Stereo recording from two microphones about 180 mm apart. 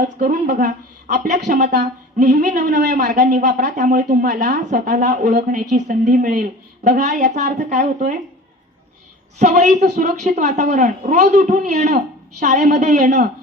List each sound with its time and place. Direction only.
0.0 s a woman's voice: 45° right (ahead or behind)
9.4 s a woman's voice: 40° right (ahead or behind)